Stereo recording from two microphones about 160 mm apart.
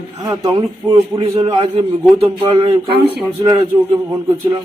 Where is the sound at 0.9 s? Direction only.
35° right (ahead or behind).